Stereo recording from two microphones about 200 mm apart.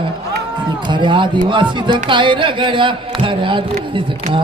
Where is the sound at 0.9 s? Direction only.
25° right (ahead or behind).